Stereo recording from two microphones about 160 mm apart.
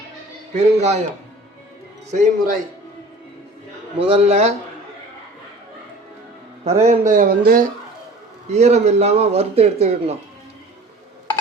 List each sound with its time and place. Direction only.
0.5 s a man's voice: 45° right (ahead or behind)
2.0 s a man's voice: 55° right (ahead or behind)
3.9 s speech: 35° right (ahead or behind)
6.8 s speech: 55° right (ahead or behind)
8.4 s speech: 45° right (ahead or behind)